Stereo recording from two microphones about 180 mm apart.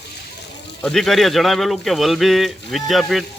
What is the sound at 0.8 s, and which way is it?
Speech, 5° left (ahead or behind).